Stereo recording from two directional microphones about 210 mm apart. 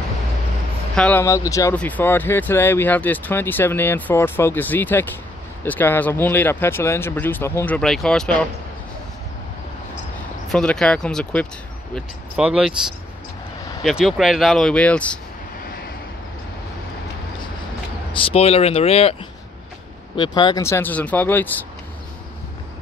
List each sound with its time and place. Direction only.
0.9 s speech: 5° left (ahead or behind)
10.5 s speech: 5° left (ahead or behind)
13.8 s speech: centre (ahead or behind)
18.1 s speech: 25° left (ahead or behind)
20.2 s speech: 20° left (ahead or behind)